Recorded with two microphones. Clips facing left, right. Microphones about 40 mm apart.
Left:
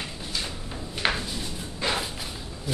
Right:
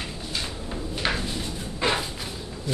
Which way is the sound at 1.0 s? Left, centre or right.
Centre.